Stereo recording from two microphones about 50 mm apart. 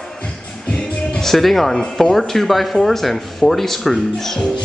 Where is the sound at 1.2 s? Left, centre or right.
Centre.